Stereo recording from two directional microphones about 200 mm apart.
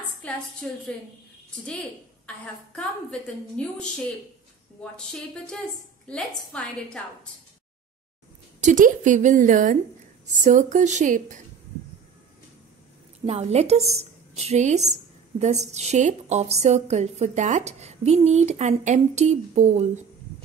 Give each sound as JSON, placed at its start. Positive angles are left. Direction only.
{"t": 0.0, "sound": "a woman's voice", "side_deg": 5}
{"t": 2.2, "sound": "a woman's voice", "side_deg": 5}
{"t": 6.0, "sound": "a woman's voice", "side_deg": 5}
{"t": 8.5, "sound": "a woman's voice", "side_deg": -40}
{"t": 13.2, "sound": "a woman's voice", "side_deg": -35}